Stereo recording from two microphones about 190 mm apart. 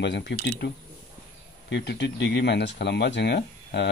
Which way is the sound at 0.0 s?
65° left (ahead or behind).